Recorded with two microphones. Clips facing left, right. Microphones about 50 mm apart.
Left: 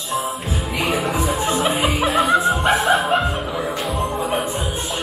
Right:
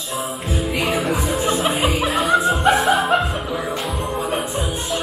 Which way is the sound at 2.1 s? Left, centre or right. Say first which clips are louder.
Left 1 dB; centre.